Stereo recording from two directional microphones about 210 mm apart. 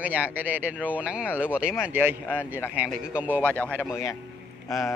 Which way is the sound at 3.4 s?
5° left (ahead or behind).